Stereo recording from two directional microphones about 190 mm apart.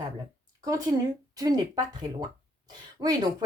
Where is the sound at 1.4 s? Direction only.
20° right (ahead or behind).